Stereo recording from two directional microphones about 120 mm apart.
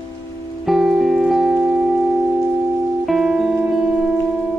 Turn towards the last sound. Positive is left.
turn(degrees=-5)  # may be behind; listen again after turning